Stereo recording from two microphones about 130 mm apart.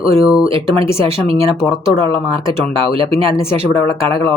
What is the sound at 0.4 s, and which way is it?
Speech, 45° right (ahead or behind).